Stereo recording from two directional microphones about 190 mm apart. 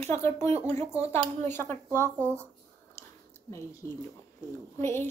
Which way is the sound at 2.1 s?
15° right (ahead or behind).